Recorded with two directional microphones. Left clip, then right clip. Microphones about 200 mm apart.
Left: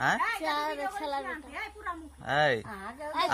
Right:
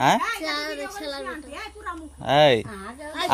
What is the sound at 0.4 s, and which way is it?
Speech, 10° right (ahead or behind).